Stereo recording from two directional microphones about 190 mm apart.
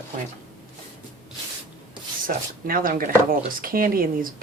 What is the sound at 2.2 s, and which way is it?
Speech, 50° right (ahead or behind).